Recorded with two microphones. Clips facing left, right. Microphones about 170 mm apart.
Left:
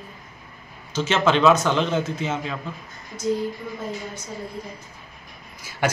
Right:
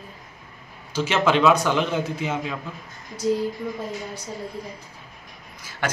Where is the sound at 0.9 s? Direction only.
10° right (ahead or behind).